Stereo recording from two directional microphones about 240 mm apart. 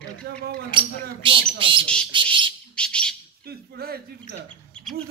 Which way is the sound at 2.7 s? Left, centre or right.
Centre.